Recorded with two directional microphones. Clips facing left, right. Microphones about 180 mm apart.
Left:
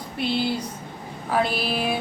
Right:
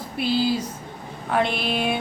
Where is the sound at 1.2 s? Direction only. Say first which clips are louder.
Right 1 dB; 5° left (ahead or behind).